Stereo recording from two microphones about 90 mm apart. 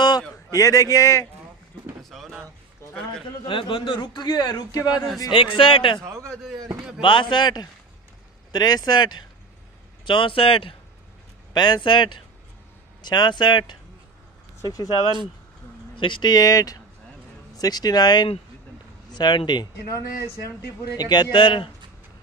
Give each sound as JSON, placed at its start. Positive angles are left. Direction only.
{"t": 0.5, "sound": "a man's voice", "side_deg": 40}
{"t": 2.0, "sound": "a sound", "side_deg": 0}
{"t": 2.8, "sound": "a man's voice", "side_deg": 30}
{"t": 3.4, "sound": "a man's voice", "side_deg": 70}
{"t": 5.3, "sound": "a man's voice", "side_deg": 75}
{"t": 6.0, "sound": "a man's voice", "side_deg": -30}
{"t": 7.0, "sound": "a man's voice", "side_deg": 65}
{"t": 10.0, "sound": "a man's voice", "side_deg": 70}
{"t": 11.5, "sound": "speech", "side_deg": 60}
{"t": 13.0, "sound": "speech", "side_deg": 55}
{"t": 14.6, "sound": "speech", "side_deg": 45}
{"t": 16.0, "sound": "a man's voice", "side_deg": 60}
{"t": 21.0, "sound": "speech", "side_deg": 55}